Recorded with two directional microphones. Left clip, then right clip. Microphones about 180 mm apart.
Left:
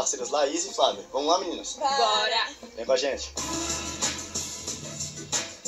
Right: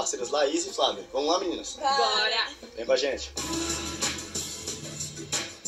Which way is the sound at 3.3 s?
15° right (ahead or behind).